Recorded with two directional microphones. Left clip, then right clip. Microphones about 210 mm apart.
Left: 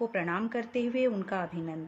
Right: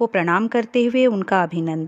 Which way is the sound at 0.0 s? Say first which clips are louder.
Right 13 dB; 50° right (ahead or behind).